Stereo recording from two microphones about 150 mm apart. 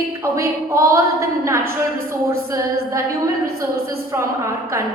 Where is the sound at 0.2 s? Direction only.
20° right (ahead or behind).